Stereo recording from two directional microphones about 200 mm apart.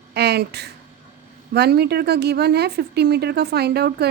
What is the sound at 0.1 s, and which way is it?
Speech, 55° right (ahead or behind).